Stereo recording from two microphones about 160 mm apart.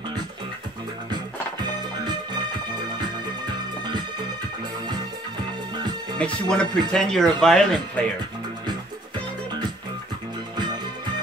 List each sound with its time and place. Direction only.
1.1 s music: 25° right (ahead or behind)
6.1 s speech: 5° left (ahead or behind)